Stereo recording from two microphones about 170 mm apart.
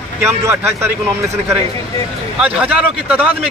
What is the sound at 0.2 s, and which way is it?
Speech, 15° right (ahead or behind).